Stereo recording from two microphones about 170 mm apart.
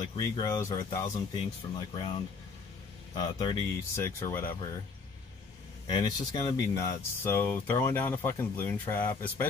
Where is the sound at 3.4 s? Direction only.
20° left (ahead or behind).